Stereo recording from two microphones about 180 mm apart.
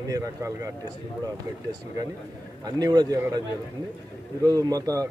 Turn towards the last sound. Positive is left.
turn(degrees=-20)  # may be behind; listen again after turning